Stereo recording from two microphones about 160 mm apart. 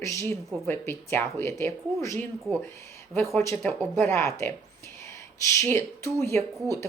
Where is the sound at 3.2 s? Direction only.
20° left (ahead or behind).